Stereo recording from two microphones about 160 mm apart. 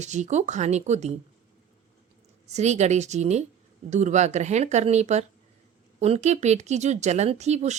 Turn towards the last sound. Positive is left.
turn(degrees=-45)  # may be behind; listen again after turning